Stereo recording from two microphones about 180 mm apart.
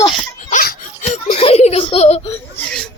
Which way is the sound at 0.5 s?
55° left (ahead or behind).